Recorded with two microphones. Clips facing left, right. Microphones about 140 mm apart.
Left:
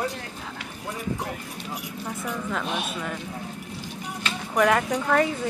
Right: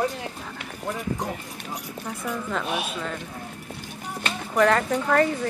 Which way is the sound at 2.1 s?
Centre (ahead or behind).